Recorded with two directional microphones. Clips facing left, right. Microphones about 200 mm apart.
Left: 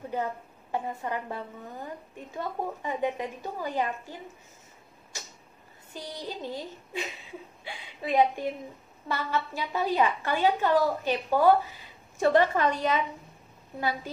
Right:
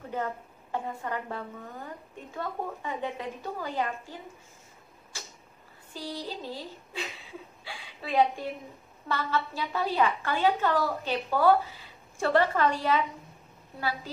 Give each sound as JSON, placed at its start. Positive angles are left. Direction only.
{"t": 0.1, "sound": "a woman's voice", "side_deg": 15}
{"t": 5.9, "sound": "a woman's voice", "side_deg": 20}